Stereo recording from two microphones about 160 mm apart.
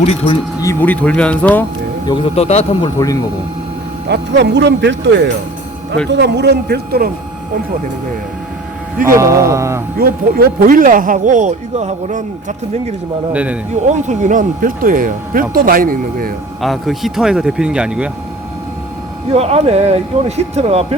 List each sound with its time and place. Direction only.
0.0 s a man's voice: 35° left (ahead or behind)
0.6 s speech: 15° left (ahead or behind)
2.0 s a man's voice: 35° left (ahead or behind)
4.1 s speech: 90° right
9.0 s speech: 20° right (ahead or behind)
10.0 s speech: 70° right (ahead or behind); by 12.5 s 50° right (ahead or behind)
13.3 s speech: 10° right (ahead or behind)
13.8 s speech: 45° right (ahead or behind); by 16.3 s 65° right (ahead or behind)
16.6 s speech: centre (ahead or behind)
19.3 s speech: 40° right (ahead or behind)